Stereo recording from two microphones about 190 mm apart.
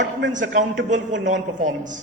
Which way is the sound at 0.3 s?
40° right (ahead or behind).